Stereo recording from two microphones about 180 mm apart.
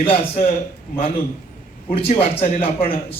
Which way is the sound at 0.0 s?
30° left (ahead or behind).